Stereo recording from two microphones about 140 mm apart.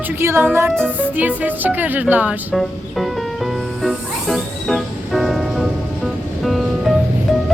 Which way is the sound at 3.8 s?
Centre (ahead or behind).